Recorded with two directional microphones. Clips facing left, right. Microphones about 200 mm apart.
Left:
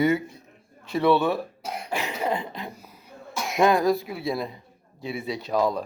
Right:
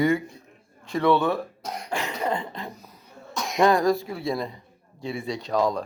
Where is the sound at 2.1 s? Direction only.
10° left (ahead or behind).